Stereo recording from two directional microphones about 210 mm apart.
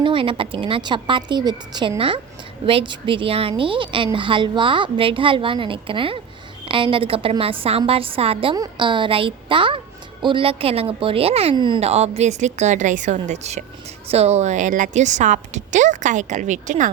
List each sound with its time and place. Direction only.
0.0 s a woman's voice: 25° right (ahead or behind)